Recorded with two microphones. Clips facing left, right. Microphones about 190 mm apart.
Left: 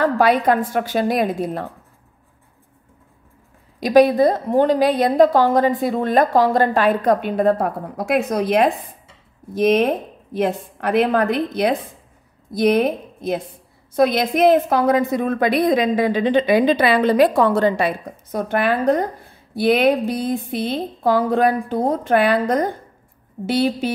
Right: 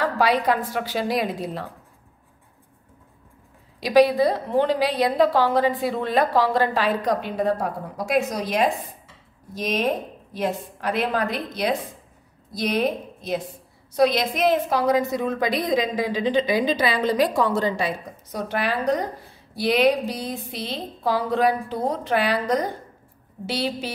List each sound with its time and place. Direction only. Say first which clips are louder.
0.0 s a woman's voice: left 5 dB; 50° left (ahead or behind)
3.8 s a woman's voice: left 4 dB; 50° left (ahead or behind)